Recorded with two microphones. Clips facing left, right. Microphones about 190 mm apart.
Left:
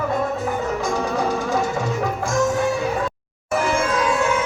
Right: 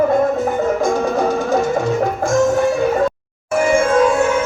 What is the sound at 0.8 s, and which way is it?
Music, 50° right (ahead or behind).